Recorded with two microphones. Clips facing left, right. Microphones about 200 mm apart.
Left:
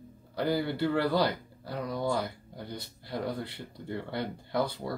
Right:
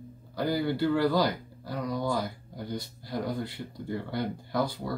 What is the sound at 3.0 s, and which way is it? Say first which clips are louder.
Speech: right 1 dB; 60° left (ahead or behind).